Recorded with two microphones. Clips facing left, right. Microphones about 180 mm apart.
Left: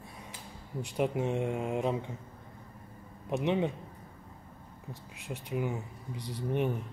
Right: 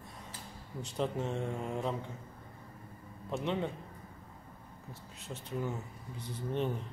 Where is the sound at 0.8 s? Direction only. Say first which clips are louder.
Left 4 dB; 15° left (ahead or behind).